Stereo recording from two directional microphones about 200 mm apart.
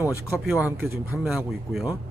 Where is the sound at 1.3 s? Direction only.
Centre (ahead or behind).